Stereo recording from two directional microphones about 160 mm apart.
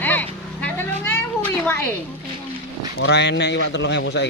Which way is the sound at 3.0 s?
90° left.